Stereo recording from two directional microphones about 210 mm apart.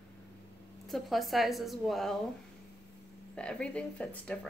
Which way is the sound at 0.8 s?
Centre (ahead or behind).